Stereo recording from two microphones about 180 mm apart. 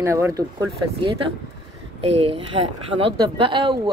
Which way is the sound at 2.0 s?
30° right (ahead or behind).